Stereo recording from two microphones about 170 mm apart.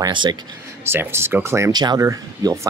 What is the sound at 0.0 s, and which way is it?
Speech, 25° right (ahead or behind).